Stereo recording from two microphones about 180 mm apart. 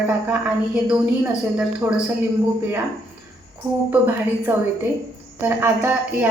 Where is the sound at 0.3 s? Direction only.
5° right (ahead or behind).